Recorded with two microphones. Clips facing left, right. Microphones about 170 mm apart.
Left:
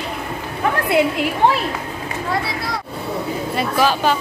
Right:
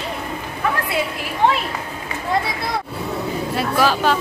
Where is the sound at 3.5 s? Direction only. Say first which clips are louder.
Even; centre (ahead or behind).